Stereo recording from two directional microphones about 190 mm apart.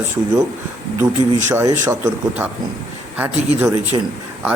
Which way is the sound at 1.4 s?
15° right (ahead or behind).